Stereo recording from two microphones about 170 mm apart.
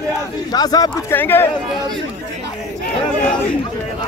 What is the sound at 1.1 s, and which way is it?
Speech, 10° left (ahead or behind).